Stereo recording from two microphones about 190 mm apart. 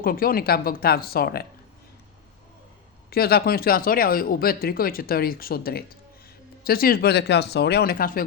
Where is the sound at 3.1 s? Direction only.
55° left (ahead or behind).